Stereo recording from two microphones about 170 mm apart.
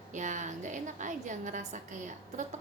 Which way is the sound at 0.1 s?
45° right (ahead or behind).